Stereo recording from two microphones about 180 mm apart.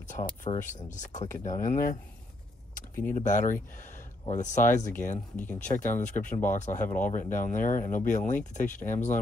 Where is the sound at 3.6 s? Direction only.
45° left (ahead or behind).